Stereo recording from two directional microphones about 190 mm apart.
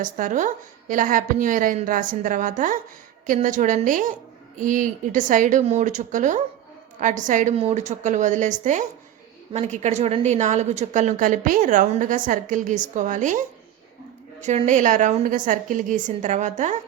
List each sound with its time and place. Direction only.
0.0 s a woman's voice: 45° right (ahead or behind)
14.4 s a woman's voice: 35° right (ahead or behind)